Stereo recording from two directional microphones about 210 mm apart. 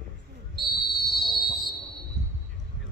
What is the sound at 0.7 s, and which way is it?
Train, 45° left (ahead or behind).